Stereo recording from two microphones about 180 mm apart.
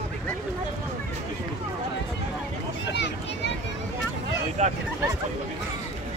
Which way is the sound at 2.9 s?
80° left.